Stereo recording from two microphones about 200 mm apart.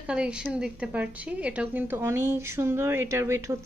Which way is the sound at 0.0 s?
5° right (ahead or behind).